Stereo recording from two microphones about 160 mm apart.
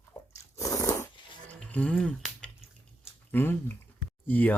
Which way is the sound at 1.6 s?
5° left (ahead or behind).